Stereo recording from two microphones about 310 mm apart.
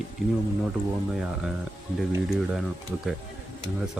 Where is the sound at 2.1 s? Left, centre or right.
Centre.